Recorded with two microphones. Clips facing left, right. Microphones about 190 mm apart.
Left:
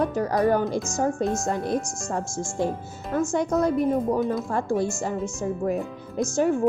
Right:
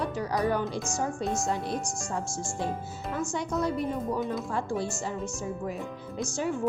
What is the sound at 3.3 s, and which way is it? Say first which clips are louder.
A woman's voice: left 7 dB; 45° left (ahead or behind).